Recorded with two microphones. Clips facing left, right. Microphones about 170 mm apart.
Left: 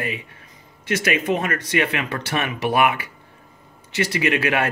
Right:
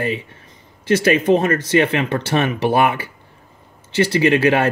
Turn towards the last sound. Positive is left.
turn(degrees=-30)  # may be behind; listen again after turning